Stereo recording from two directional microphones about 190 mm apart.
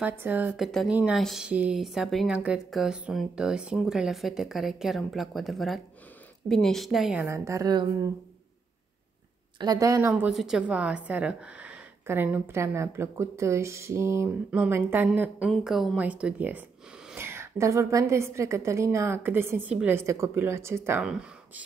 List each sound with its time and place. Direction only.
0.0 s a woman's voice: 10° right (ahead or behind)
7.2 s a woman's voice: 15° right (ahead or behind)
9.6 s a woman's voice: 20° right (ahead or behind)